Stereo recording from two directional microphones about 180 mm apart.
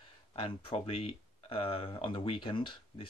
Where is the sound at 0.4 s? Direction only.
30° left (ahead or behind).